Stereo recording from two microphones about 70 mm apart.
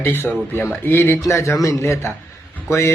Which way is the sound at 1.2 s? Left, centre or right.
Left.